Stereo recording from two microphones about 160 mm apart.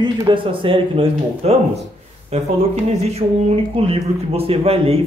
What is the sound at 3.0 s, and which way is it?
Speech, 35° right (ahead or behind).